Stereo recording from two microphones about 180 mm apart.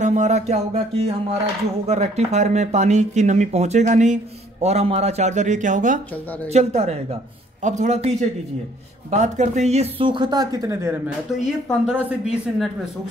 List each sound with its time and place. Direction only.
0.0 s speech: 40° right (ahead or behind); by 11.0 s 15° right (ahead or behind)
11.8 s speech: 5° right (ahead or behind)